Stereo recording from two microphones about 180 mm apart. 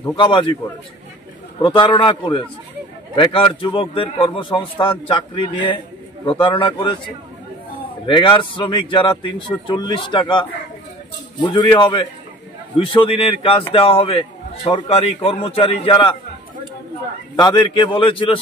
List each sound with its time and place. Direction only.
0.0 s a man's voice: 25° left (ahead or behind)
1.6 s a man's voice: 25° left (ahead or behind)
8.2 s a man's voice: 25° left (ahead or behind)
11.4 s a man's voice: 25° left (ahead or behind)
17.4 s a man's voice: 25° left (ahead or behind)